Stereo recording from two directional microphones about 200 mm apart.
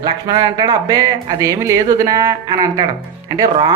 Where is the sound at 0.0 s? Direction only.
20° right (ahead or behind).